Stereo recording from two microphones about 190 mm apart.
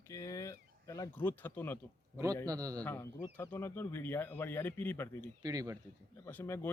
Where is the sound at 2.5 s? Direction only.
20° right (ahead or behind).